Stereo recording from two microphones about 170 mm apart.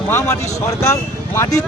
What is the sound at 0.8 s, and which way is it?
Speech, 15° left (ahead or behind).